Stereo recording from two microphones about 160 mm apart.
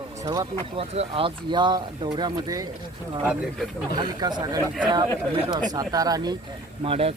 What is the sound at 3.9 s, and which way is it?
Speech, 25° right (ahead or behind).